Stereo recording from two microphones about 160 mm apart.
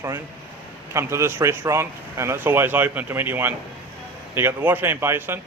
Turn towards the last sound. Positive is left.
turn(degrees=-15)  # may be behind; listen again after turning